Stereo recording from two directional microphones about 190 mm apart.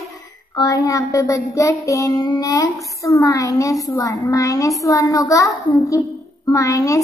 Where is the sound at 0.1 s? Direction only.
15° left (ahead or behind).